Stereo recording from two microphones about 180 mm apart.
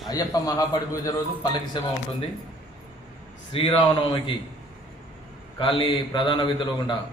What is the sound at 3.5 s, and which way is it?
Speech, 30° left (ahead or behind).